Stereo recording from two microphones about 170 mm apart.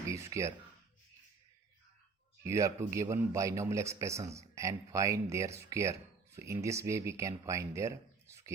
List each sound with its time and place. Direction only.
0.3 s speech: 20° right (ahead or behind)
2.4 s speech: 15° right (ahead or behind)